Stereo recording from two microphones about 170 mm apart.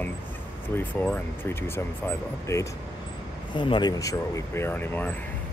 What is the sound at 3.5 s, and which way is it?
Speech, 30° left (ahead or behind).